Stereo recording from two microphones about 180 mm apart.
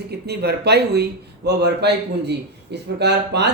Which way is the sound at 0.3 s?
65° right (ahead or behind).